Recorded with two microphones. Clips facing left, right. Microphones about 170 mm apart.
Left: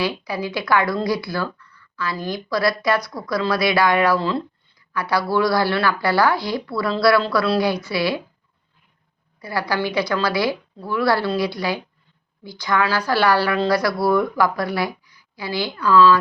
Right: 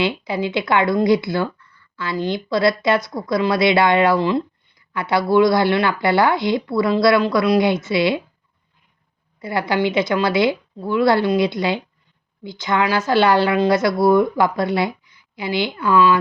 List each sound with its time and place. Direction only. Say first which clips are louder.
0.0 s speech: right 3 dB; 25° right (ahead or behind)
9.4 s speech: right 4 dB; 20° right (ahead or behind)